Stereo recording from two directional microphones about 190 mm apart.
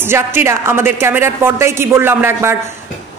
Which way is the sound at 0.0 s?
10° right (ahead or behind).